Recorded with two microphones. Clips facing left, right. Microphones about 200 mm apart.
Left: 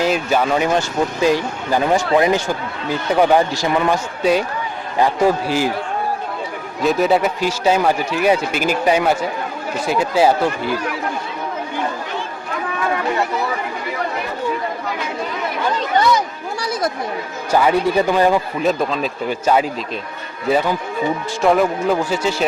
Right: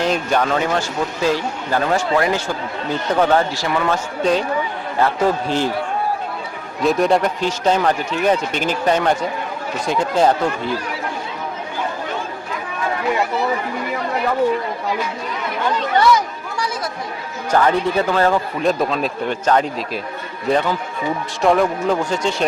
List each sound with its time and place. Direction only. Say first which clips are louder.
0.0 s speech: left 1 dB; 5° left (ahead or behind)
6.8 s speech: even; 5° left (ahead or behind)
16.6 s speech: left 3 dB; 35° left (ahead or behind)
17.5 s speech: left 1 dB; 10° left (ahead or behind)
18.6 s a man's voice: even; centre (ahead or behind)